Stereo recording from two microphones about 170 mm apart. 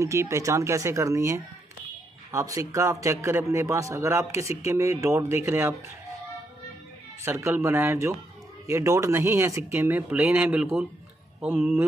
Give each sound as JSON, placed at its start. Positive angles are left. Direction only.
{"t": 0.0, "sound": "speech", "side_deg": -15}
{"t": 7.2, "sound": "speech", "side_deg": -15}